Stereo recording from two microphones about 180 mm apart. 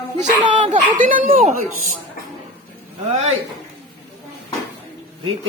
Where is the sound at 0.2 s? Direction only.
40° right (ahead or behind).